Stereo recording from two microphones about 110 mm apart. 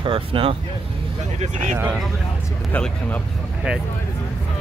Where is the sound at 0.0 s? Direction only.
55° right (ahead or behind).